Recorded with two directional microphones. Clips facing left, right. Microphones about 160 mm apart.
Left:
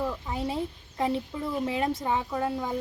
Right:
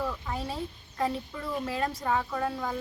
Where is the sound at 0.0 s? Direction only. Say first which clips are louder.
Left 3 dB; 20° left (ahead or behind).